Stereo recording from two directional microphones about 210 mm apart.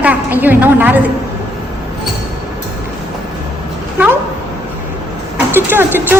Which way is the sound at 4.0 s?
10° right (ahead or behind).